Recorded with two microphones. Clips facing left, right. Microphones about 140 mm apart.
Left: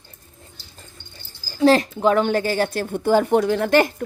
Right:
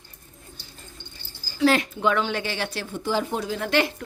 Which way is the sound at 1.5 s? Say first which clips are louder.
Left 5 dB; 35° left (ahead or behind).